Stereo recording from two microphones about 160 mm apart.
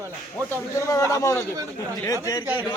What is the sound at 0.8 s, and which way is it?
Speech, 20° left (ahead or behind).